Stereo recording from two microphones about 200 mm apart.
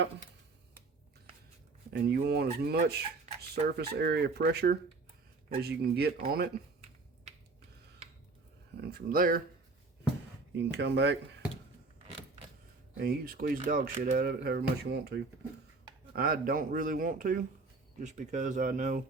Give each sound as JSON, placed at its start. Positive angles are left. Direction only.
{"t": 1.9, "sound": "speech", "side_deg": -50}
{"t": 8.8, "sound": "speech", "side_deg": -50}
{"t": 10.5, "sound": "speech", "side_deg": -60}
{"t": 12.9, "sound": "speech", "side_deg": -45}